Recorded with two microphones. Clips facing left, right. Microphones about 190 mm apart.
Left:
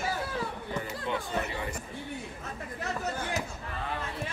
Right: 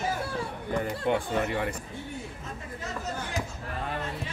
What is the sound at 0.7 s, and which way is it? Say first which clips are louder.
Speech: right 7 dB; 55° right (ahead or behind).